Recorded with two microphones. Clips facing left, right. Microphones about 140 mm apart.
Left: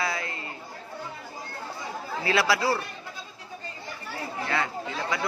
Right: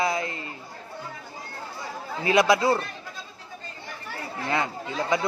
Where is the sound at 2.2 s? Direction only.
20° right (ahead or behind).